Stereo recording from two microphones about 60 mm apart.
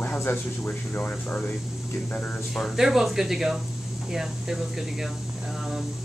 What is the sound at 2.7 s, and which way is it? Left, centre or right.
Speech, centre.